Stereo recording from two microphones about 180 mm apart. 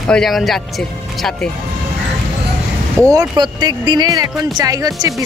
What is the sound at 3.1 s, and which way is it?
Speech, 20° right (ahead or behind).